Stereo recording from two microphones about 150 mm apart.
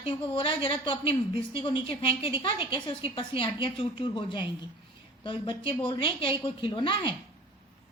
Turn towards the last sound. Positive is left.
turn(degrees=35)  # may be behind; listen again after turning